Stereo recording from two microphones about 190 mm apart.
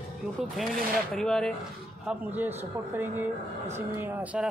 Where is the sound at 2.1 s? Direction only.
10° right (ahead or behind).